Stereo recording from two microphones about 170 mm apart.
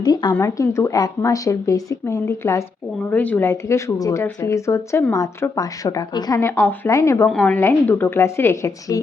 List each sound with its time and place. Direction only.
0.0 s speech: 25° left (ahead or behind)
7.3 s speech: 5° left (ahead or behind)